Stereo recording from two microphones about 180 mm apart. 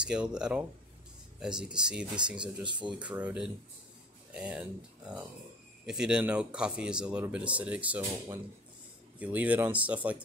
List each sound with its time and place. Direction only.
0.0 s speech: 5° right (ahead or behind)
2.6 s speech: 25° right (ahead or behind)
2.9 s speech: 5° right (ahead or behind)
9.2 s speech: 10° right (ahead or behind)